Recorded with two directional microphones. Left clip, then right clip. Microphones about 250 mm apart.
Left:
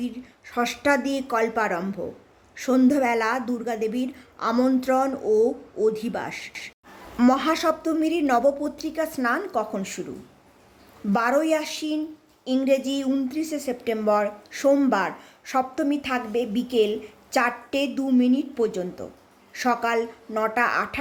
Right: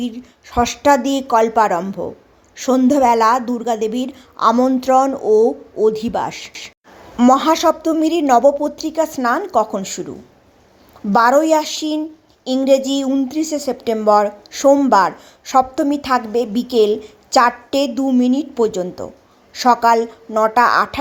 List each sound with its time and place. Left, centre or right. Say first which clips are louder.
0.0 s a woman's voice: right 7 dB; centre
11.1 s a woman's voice: right 10 dB; centre